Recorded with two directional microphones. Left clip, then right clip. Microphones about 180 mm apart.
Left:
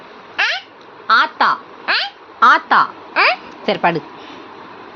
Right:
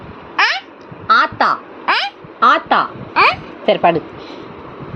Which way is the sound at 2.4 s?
30° left (ahead or behind).